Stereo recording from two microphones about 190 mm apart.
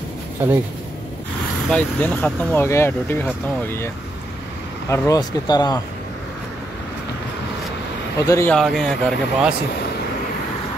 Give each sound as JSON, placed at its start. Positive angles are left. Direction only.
{"t": 0.4, "sound": "speech", "side_deg": -10}
{"t": 1.7, "sound": "speech", "side_deg": 5}
{"t": 8.2, "sound": "speech", "side_deg": 15}
{"t": 8.5, "sound": "speech", "side_deg": 0}